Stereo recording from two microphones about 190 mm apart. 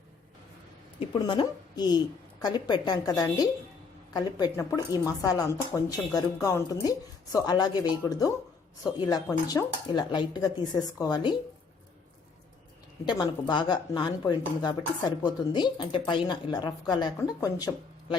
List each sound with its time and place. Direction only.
0.9 s speech: 25° left (ahead or behind)
13.1 s speech: 25° left (ahead or behind)